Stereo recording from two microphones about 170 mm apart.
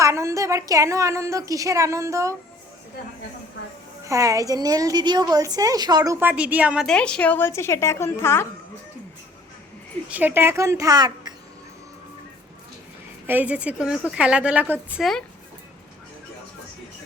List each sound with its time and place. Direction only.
0.0 s a woman's voice: 15° right (ahead or behind)
4.0 s a woman's voice: 20° right (ahead or behind)
6.8 s a woman's voice: 5° left (ahead or behind)
10.1 s a woman's voice: 10° right (ahead or behind)
13.2 s a woman's voice: 10° right (ahead or behind)